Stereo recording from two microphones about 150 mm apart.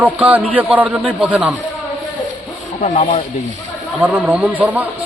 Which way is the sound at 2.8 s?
55° left (ahead or behind).